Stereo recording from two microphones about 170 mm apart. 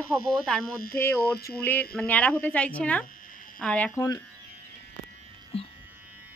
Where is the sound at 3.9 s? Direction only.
15° left (ahead or behind).